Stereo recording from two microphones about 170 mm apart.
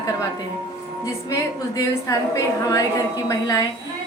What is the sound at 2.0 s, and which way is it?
A woman's voice, 20° left (ahead or behind).